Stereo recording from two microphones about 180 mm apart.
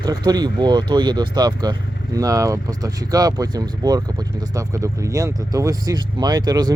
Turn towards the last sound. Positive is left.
turn(degrees=-20)  # may be behind; listen again after turning